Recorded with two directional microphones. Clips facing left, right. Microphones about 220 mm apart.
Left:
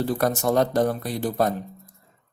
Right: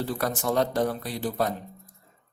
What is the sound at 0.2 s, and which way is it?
A man's voice, 50° left (ahead or behind).